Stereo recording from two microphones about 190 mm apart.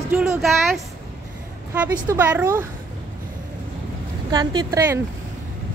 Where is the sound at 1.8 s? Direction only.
10° right (ahead or behind).